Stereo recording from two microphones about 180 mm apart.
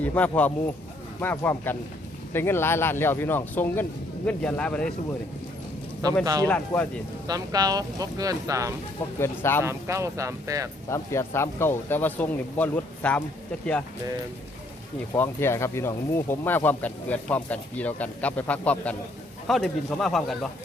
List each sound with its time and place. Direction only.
0.0 s speech: 10° left (ahead or behind)
6.0 s speech: 20° right (ahead or behind)
6.4 s speech: 10° left (ahead or behind)
7.3 s speech: 20° right (ahead or behind)
9.1 s speech: 15° left (ahead or behind)
9.6 s speech: 15° right (ahead or behind)
10.8 s speech: 15° left (ahead or behind)
15.1 s speech: 15° left (ahead or behind)